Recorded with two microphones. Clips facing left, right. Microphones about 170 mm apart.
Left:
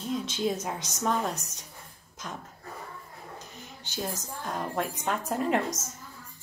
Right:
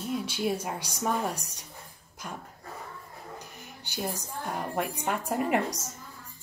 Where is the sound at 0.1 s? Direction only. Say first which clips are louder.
Left 1 dB; 10° right (ahead or behind).